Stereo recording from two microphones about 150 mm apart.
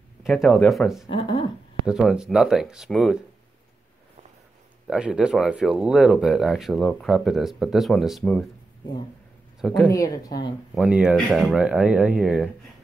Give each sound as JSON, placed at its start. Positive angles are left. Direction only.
{"t": 0.2, "sound": "speech", "side_deg": 0}
{"t": 1.1, "sound": "speech", "side_deg": 35}
{"t": 1.9, "sound": "speech", "side_deg": -5}
{"t": 4.8, "sound": "speech", "side_deg": -5}
{"t": 9.6, "sound": "speech", "side_deg": 0}
{"t": 9.9, "sound": "speech", "side_deg": 25}
{"t": 10.7, "sound": "speech", "side_deg": -5}